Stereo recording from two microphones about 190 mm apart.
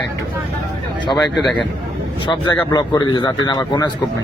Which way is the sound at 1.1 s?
Centre (ahead or behind).